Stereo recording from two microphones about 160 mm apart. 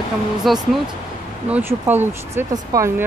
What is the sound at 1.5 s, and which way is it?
Speech, 10° right (ahead or behind).